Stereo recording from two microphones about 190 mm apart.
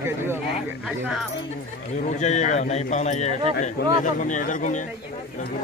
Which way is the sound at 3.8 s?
60° left (ahead or behind).